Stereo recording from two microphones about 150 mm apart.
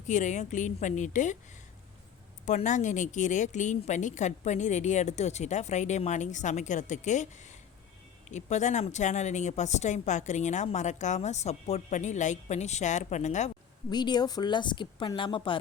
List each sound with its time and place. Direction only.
0.0 s a woman's voice: 55° left (ahead or behind)
2.5 s a woman's voice: 55° left (ahead or behind)
13.9 s speech: 30° left (ahead or behind)